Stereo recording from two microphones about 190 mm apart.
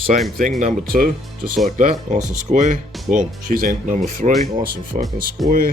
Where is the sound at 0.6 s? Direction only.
50° right (ahead or behind).